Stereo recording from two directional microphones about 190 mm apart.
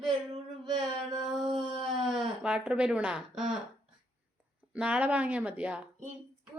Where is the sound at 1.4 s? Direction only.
25° right (ahead or behind).